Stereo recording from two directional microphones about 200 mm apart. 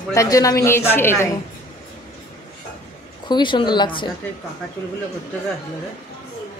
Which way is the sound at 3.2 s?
25° left (ahead or behind).